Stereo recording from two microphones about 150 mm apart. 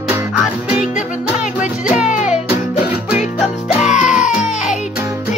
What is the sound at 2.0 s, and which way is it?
Music, 55° left (ahead or behind).